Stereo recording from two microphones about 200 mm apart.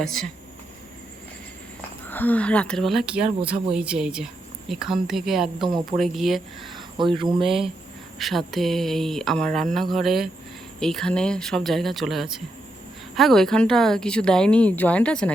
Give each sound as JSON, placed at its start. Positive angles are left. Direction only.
{"t": 0.0, "sound": "speech", "side_deg": 0}
{"t": 2.0, "sound": "speech", "side_deg": 10}
{"t": 6.7, "sound": "speech", "side_deg": -25}
{"t": 8.2, "sound": "speech", "side_deg": 0}